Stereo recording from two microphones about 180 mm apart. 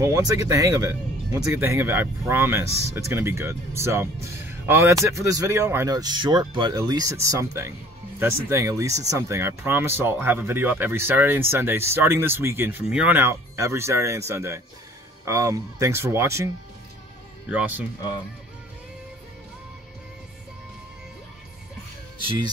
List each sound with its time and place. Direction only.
0.0 s speech: 20° right (ahead or behind)
17.5 s speech: 10° right (ahead or behind)